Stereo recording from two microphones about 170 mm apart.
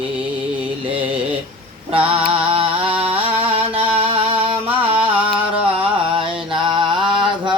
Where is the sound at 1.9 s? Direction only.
35° right (ahead or behind).